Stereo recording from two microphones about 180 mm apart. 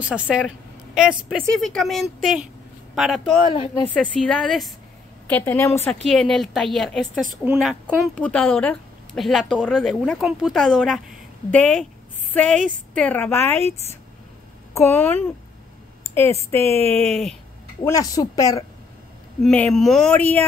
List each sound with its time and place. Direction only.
0.0 s a woman's voice: 5° right (ahead or behind)
3.4 s speech: 30° left (ahead or behind)
3.9 s a woman's voice: 5° left (ahead or behind)
5.3 s a woman's voice: 10° left (ahead or behind)
6.0 s a woman's voice: centre (ahead or behind)
14.7 s a woman's voice: 15° left (ahead or behind)
16.4 s a woman's voice: 15° left (ahead or behind)
17.1 s a woman's voice: centre (ahead or behind)
17.8 s speech: 20° left (ahead or behind)
19.4 s a woman's voice: 5° left (ahead or behind)